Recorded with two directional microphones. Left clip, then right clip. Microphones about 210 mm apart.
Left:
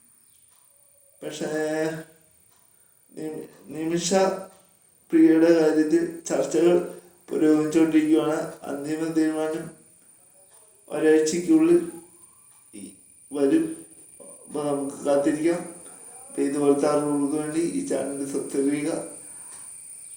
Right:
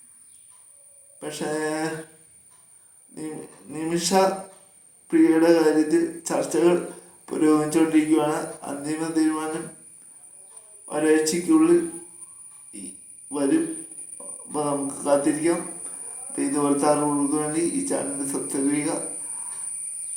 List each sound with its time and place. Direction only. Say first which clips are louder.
1.2 s speech: even; 15° right (ahead or behind)
3.7 s a man's voice: even; 15° right (ahead or behind)
10.8 s speech: left 1 dB; 15° right (ahead or behind)
13.3 s speech: left 1 dB; 15° right (ahead or behind)